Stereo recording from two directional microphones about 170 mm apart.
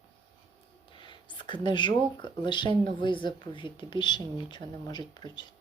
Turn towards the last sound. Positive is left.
turn(degrees=25)  # may be behind; listen again after turning